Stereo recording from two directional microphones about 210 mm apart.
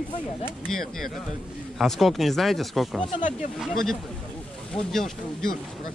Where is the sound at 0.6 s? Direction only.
Centre (ahead or behind).